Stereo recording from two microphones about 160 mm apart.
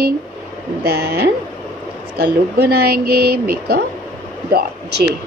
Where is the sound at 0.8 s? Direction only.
85° right.